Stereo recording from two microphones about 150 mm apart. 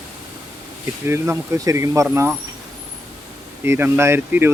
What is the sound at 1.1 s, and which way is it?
Speech, 15° right (ahead or behind).